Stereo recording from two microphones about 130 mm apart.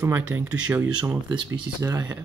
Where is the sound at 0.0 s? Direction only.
15° right (ahead or behind).